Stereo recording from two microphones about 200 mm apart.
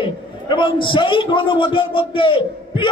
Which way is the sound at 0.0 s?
25° left (ahead or behind).